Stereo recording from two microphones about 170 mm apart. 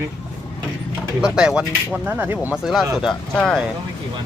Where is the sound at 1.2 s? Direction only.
5° right (ahead or behind).